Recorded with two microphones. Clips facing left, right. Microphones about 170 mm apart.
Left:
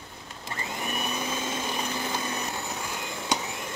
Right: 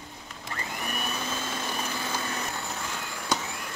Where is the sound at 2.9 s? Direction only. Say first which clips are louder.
Even; 15° left (ahead or behind).